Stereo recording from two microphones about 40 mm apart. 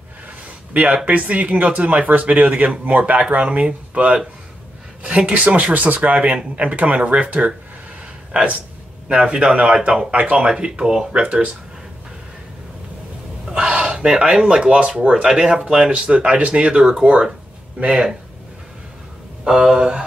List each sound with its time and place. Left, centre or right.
0.7 s speech: right
5.0 s speech: right
9.1 s speech: right
10.1 s speech: right
10.6 s speech: right
13.5 s a sound: right
13.9 s speech: centre
14.6 s speech: right
15.2 s a sound: centre
16.0 s speech: right
17.8 s a sound: centre
19.4 s a sound: centre